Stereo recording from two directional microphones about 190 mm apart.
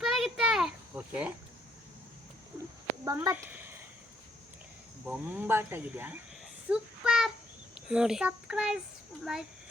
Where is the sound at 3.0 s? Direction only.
15° right (ahead or behind).